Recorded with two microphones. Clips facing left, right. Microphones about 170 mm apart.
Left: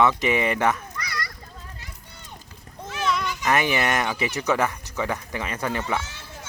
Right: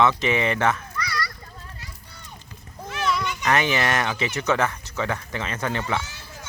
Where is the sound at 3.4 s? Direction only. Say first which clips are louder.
Even; 10° left (ahead or behind).